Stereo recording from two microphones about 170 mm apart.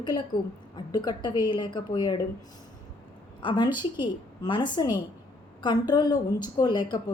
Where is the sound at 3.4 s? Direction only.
25° left (ahead or behind).